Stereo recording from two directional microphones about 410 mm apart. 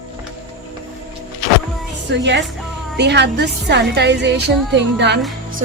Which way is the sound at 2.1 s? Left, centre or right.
Right.